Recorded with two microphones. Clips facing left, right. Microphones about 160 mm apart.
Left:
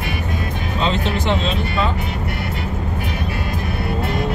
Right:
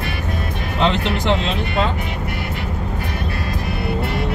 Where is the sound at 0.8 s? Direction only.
70° right (ahead or behind).